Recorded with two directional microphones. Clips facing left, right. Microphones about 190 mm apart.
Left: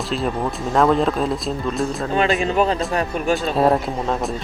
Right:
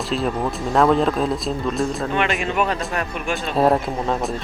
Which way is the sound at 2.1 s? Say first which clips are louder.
Left 3 dB; 35° left (ahead or behind).